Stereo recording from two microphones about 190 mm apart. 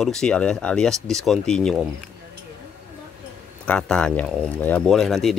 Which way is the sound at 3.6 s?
5° left (ahead or behind).